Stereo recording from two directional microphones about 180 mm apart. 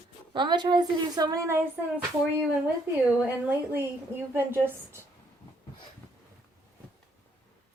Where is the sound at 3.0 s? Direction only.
10° right (ahead or behind).